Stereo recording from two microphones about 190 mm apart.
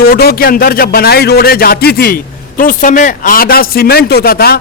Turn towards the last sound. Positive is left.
turn(degrees=55)  # may be behind; listen again after turning